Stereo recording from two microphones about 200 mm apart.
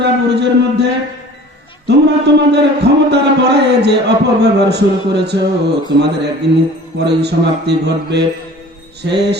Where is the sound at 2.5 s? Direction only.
55° right (ahead or behind).